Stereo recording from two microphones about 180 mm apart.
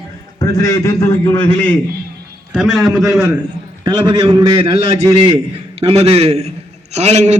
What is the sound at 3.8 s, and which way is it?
A man's voice, 20° right (ahead or behind).